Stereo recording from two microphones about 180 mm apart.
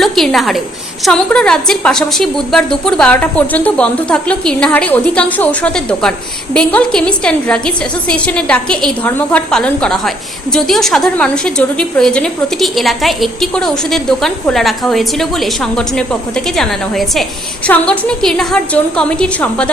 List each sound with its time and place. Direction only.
0.0 s a woman's voice: centre (ahead or behind)